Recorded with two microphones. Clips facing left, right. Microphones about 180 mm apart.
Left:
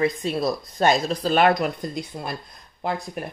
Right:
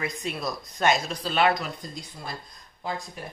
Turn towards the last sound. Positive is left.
turn(degrees=60)  # may be behind; listen again after turning